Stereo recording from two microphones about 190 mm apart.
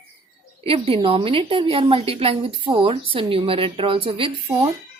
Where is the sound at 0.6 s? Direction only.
30° right (ahead or behind).